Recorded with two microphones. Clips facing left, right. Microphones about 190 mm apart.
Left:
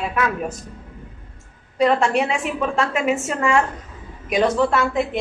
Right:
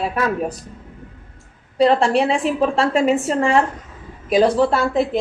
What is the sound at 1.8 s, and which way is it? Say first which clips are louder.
A woman's voice: right 3 dB; 35° right (ahead or behind).